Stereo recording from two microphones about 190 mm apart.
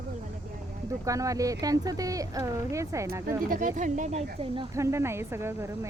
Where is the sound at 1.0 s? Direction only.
15° right (ahead or behind).